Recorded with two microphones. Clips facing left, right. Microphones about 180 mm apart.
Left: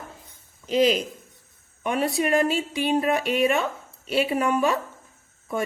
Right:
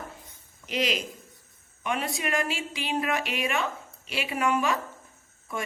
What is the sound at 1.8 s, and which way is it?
Speech, 35° left (ahead or behind).